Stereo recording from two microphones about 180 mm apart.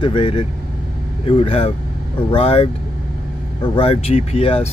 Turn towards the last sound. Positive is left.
turn(degrees=35)  # may be behind; listen again after turning